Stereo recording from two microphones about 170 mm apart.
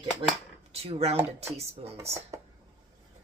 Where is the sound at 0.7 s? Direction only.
35° right (ahead or behind).